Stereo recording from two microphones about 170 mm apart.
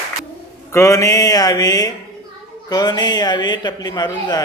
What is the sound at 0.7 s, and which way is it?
A man's voice, 15° left (ahead or behind).